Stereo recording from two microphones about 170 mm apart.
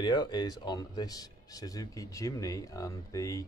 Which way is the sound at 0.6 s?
25° left (ahead or behind).